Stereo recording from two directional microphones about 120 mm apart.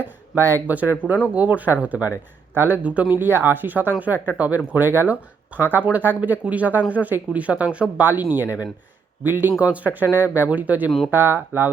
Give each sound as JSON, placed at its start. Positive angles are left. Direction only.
{"t": 0.0, "sound": "speech", "side_deg": -20}